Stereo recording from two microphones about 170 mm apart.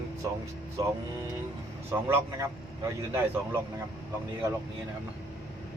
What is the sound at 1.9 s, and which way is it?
Speech, 15° right (ahead or behind).